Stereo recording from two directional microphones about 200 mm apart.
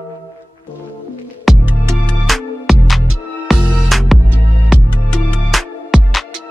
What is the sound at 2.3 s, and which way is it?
Music, centre (ahead or behind).